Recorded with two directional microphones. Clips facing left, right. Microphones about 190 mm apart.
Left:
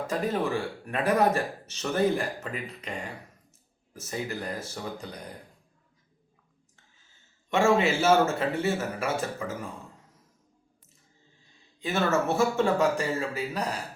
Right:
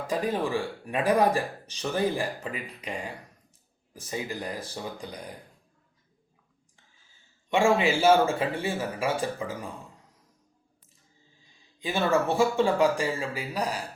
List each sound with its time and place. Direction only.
0.1 s speech: 10° right (ahead or behind)
3.9 s speech: 15° right (ahead or behind)
7.5 s speech: 15° right (ahead or behind)
11.8 s speech: 15° right (ahead or behind)